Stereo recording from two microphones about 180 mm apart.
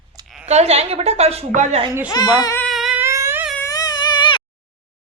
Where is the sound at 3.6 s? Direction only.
20° left (ahead or behind).